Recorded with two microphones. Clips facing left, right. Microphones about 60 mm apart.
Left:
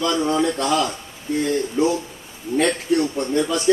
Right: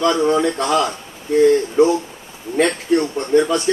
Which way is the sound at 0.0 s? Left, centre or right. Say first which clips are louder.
Right 4 dB; right.